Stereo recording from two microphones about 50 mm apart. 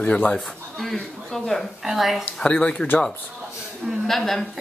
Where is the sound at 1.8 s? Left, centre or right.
Centre.